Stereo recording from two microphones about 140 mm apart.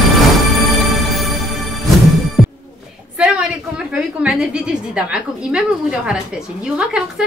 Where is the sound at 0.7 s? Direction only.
Centre (ahead or behind).